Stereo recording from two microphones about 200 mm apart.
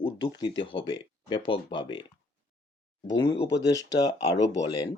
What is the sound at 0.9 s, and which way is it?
Speech, 25° left (ahead or behind).